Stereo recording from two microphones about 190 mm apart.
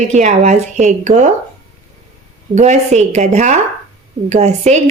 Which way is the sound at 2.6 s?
35° right (ahead or behind).